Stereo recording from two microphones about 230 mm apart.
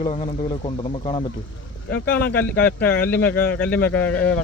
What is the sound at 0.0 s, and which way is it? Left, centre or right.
Speech, left.